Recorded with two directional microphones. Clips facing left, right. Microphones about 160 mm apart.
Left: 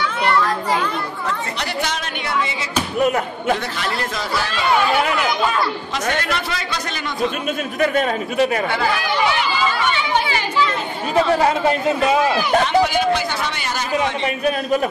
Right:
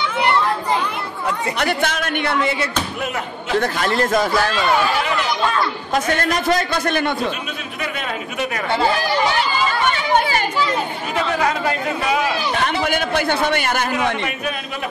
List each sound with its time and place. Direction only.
1.6 s a man's voice: 55° right (ahead or behind)
3.5 s a man's voice: 45° right (ahead or behind)
5.9 s a man's voice: 50° right (ahead or behind)
7.8 s speech: 45° left (ahead or behind)
8.7 s speech: 30° right (ahead or behind)
9.7 s chatter: 50° right (ahead or behind)
11.3 s a man's voice: 25° left (ahead or behind)
12.8 s a man's voice: 55° right (ahead or behind)